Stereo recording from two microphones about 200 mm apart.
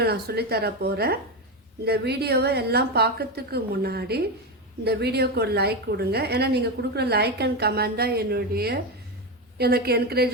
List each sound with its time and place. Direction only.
0.0 s a woman's voice: 55° right (ahead or behind)